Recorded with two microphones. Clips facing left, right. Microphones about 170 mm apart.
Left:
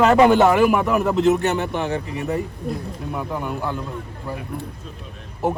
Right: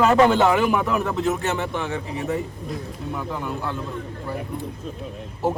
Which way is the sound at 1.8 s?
35° left (ahead or behind).